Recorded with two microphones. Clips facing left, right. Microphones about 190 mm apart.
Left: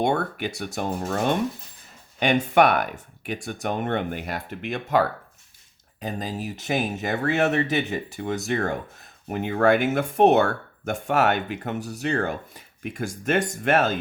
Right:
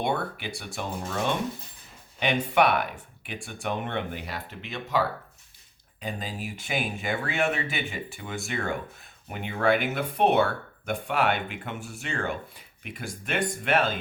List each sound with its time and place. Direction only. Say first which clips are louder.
0.0 s speech: left 5 dB; 45° left (ahead or behind)
6.0 s speech: left 4 dB; 40° left (ahead or behind)